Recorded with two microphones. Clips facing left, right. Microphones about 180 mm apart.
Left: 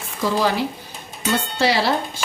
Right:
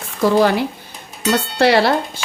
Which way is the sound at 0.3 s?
60° right (ahead or behind).